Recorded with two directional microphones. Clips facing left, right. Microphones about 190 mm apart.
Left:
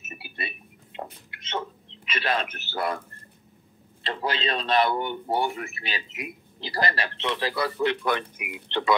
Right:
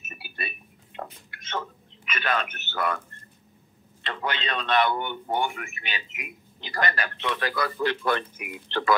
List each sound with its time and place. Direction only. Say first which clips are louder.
0.0 s a sound: left 1 dB; 20° left (ahead or behind)
2.0 s speech: left 1 dB; 30° left (ahead or behind)
4.0 s a man's voice: left 3 dB; 35° left (ahead or behind); by 8.9 s 15° left (ahead or behind)